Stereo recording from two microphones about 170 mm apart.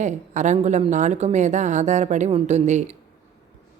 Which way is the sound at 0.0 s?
45° right (ahead or behind).